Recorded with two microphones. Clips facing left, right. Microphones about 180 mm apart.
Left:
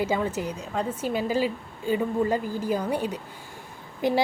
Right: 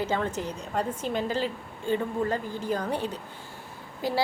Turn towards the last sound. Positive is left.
turn(degrees=20)  # may be behind; listen again after turning